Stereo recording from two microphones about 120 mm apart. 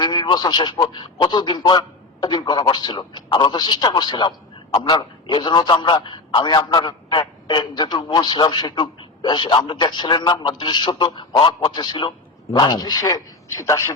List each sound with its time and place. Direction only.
0.0 s a man's voice: 35° left (ahead or behind)